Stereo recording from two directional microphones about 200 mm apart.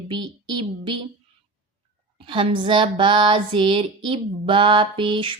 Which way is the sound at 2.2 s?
25° right (ahead or behind).